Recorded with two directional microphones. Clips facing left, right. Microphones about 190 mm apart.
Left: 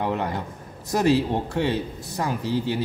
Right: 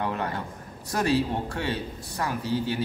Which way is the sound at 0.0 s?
20° left (ahead or behind).